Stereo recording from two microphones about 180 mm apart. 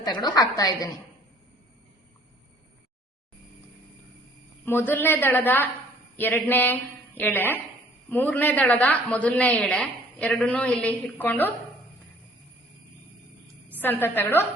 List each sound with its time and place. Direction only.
0.0 s a woman's voice: 25° left (ahead or behind)
4.6 s a woman's voice: 10° left (ahead or behind)
13.7 s a sound: 10° left (ahead or behind)
14.2 s a woman's voice: 10° left (ahead or behind)